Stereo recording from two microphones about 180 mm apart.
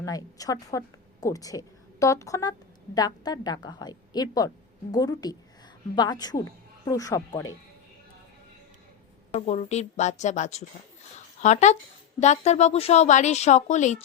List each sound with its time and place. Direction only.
0.0 s a woman's voice: 20° left (ahead or behind)
9.3 s a woman's voice: 35° left (ahead or behind)